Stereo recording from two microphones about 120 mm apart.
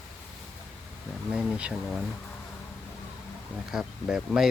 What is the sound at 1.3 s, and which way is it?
Speech, 10° right (ahead or behind).